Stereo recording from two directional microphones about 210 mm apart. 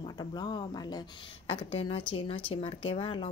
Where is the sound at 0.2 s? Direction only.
20° left (ahead or behind).